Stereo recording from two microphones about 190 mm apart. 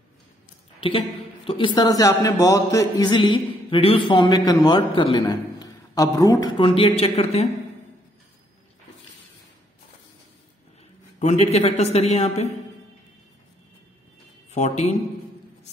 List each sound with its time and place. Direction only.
0.7 s a man's voice: 30° left (ahead or behind)
6.6 s speech: 30° left (ahead or behind)
11.1 s speech: 35° left (ahead or behind)
14.5 s speech: 35° left (ahead or behind)